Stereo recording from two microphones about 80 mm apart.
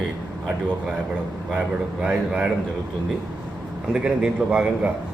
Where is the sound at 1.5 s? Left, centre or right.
Centre.